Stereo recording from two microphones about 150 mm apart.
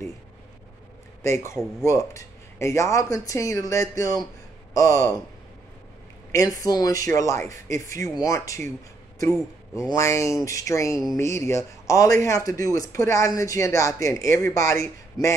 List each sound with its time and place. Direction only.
1.2 s speech: 20° left (ahead or behind)
6.3 s speech: 25° left (ahead or behind)